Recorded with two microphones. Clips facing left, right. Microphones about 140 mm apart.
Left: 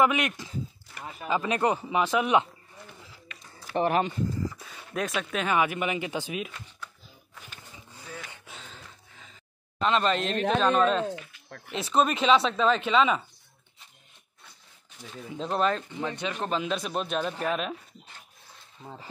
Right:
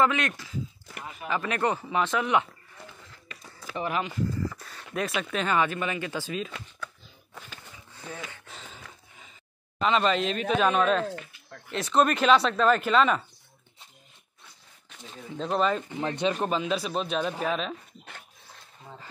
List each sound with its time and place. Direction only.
0.0 s speech: 15° left (ahead or behind)
3.7 s speech: 55° left (ahead or behind)
4.6 s speech: centre (ahead or behind)
9.8 s speech: centre (ahead or behind)
15.3 s speech: centre (ahead or behind)
16.0 s speech: 20° right (ahead or behind)
16.4 s speech: centre (ahead or behind)